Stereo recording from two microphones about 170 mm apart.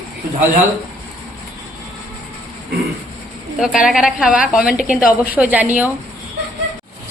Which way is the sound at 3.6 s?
5° right (ahead or behind).